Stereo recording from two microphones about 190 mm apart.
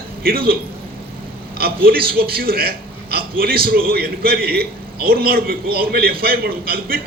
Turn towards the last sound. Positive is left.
turn(degrees=-50)  # may be behind; listen again after turning